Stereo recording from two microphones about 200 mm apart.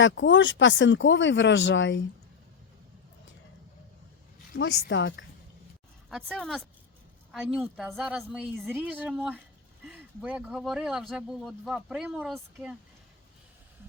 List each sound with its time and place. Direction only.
0.0 s speech: 65° left (ahead or behind)
4.5 s a woman's voice: 70° left (ahead or behind)
6.1 s speech: centre (ahead or behind)